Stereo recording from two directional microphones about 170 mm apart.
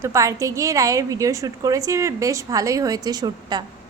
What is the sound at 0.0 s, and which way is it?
A woman's voice, 20° right (ahead or behind).